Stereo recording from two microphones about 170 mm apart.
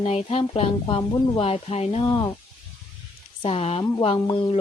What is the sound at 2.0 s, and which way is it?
Speech, 25° left (ahead or behind).